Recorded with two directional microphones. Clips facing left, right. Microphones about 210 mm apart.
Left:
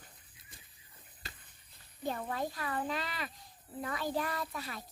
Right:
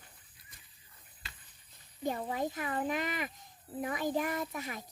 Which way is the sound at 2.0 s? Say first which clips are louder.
Right 2 dB; 15° right (ahead or behind).